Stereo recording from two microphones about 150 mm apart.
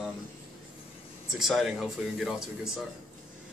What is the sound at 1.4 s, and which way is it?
A man's voice, centre (ahead or behind).